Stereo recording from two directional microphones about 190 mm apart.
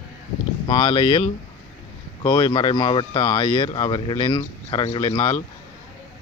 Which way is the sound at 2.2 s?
25° left (ahead or behind).